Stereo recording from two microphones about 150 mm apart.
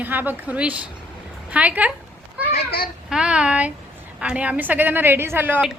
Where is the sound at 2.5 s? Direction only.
90° left.